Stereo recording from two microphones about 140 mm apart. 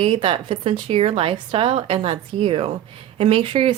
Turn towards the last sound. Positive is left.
turn(degrees=-40)  # may be behind; listen again after turning